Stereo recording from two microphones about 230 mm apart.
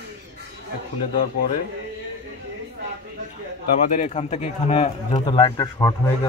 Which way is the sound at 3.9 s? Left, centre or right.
Left.